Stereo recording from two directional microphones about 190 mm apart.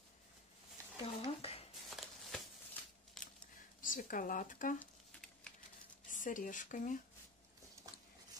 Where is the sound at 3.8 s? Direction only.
45° left (ahead or behind).